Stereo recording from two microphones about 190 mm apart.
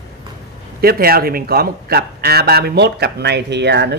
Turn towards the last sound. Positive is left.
turn(degrees=-65)  # may be behind; listen again after turning